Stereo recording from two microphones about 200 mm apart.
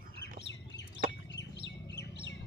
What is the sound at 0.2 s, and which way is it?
Chicken, 60° left (ahead or behind).